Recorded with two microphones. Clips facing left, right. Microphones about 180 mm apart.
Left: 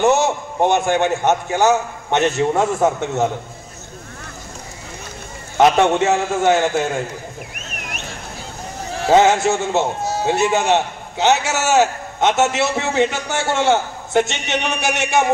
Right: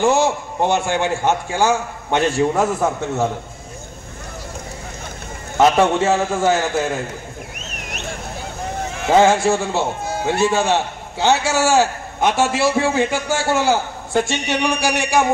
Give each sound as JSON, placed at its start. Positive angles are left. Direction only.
{"t": 0.0, "sound": "a man's voice", "side_deg": 20}
{"t": 5.6, "sound": "a man's voice", "side_deg": 20}
{"t": 9.2, "sound": "a man's voice", "side_deg": 20}